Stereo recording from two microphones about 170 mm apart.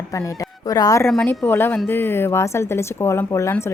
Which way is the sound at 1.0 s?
5° left (ahead or behind).